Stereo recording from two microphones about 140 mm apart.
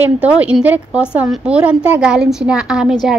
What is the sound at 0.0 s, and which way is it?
A woman's voice, 10° right (ahead or behind).